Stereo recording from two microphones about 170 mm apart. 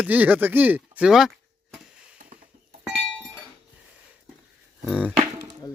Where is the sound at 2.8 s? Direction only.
Centre (ahead or behind).